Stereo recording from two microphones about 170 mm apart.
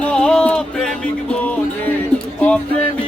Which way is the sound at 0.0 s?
5° left (ahead or behind).